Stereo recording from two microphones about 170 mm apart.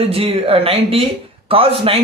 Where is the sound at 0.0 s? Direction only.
35° right (ahead or behind).